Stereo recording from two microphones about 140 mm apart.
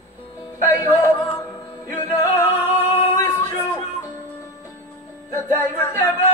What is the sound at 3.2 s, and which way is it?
Music, 15° left (ahead or behind).